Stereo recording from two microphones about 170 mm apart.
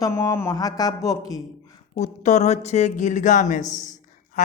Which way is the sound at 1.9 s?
45° left (ahead or behind).